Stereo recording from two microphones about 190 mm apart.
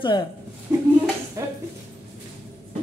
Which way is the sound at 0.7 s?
15° right (ahead or behind).